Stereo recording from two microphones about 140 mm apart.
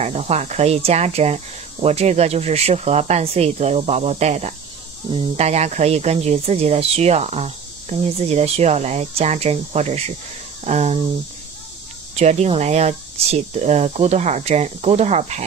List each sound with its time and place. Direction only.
0.0 s speech: 50° right (ahead or behind)
12.2 s speech: 50° right (ahead or behind)